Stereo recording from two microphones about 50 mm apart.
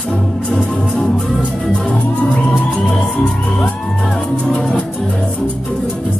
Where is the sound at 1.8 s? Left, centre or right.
Centre.